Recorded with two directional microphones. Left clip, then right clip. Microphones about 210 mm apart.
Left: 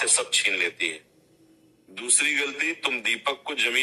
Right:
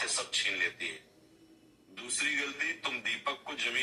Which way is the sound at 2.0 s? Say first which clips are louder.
Left 8 dB; 45° left (ahead or behind).